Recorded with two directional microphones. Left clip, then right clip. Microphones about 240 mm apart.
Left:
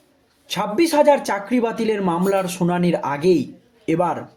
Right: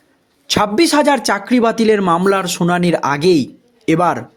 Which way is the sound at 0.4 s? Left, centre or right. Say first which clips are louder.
Right 6 dB; right.